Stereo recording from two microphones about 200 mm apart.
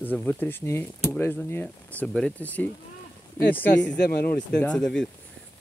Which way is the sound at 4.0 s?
50° left (ahead or behind).